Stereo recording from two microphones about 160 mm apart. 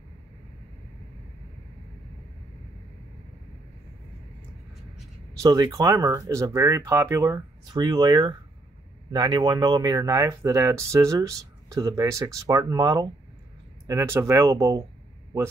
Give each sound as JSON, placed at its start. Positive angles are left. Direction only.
{"t": 5.4, "sound": "speech", "side_deg": -25}